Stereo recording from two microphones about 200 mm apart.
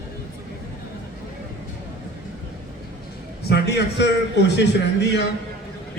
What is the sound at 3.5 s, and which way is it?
A man's voice, 55° left (ahead or behind).